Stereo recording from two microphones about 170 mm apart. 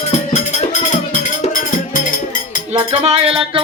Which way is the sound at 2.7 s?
35° right (ahead or behind).